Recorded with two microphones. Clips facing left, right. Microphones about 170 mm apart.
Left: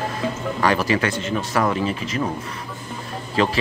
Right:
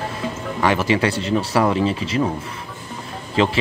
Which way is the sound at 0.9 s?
30° right (ahead or behind).